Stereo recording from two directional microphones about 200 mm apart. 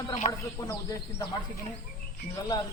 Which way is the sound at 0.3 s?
15° left (ahead or behind).